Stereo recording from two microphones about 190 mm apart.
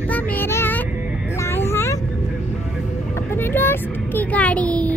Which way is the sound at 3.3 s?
10° left (ahead or behind).